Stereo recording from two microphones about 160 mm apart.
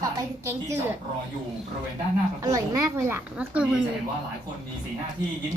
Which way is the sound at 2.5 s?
20° right (ahead or behind).